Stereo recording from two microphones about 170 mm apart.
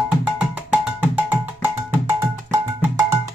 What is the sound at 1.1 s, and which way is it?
Music, 10° right (ahead or behind).